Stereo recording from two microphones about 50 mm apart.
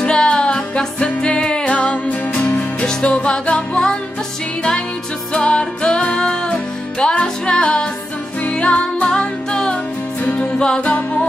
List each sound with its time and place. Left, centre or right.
0.0 s music: centre
5.3 s music: left